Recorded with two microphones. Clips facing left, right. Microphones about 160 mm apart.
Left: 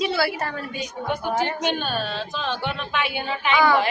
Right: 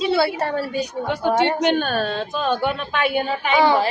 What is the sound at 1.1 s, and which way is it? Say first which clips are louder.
Speech: right 5 dB; 90° right.